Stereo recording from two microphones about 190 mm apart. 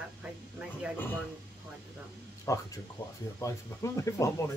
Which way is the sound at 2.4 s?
15° left (ahead or behind).